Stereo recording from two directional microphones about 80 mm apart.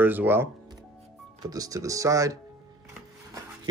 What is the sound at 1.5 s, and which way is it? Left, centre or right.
Speech, right.